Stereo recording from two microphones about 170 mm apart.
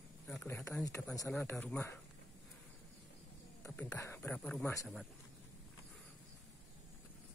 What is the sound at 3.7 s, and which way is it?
Speech, 10° left (ahead or behind).